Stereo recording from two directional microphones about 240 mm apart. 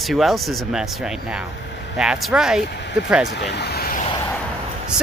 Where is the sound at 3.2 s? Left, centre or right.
Left.